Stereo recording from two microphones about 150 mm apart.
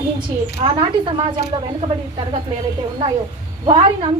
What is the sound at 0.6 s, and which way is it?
A woman's voice, 35° right (ahead or behind).